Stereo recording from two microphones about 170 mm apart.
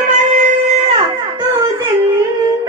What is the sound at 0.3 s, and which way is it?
Shofar, 45° right (ahead or behind).